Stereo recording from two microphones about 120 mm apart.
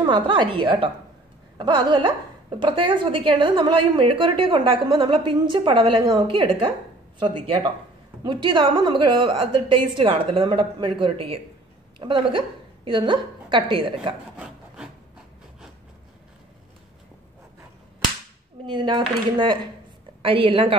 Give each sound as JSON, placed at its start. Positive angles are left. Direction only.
{"t": 0.0, "sound": "a woman's voice", "side_deg": -40}
{"t": 8.2, "sound": "a woman's voice", "side_deg": -40}
{"t": 18.7, "sound": "a woman's voice", "side_deg": -40}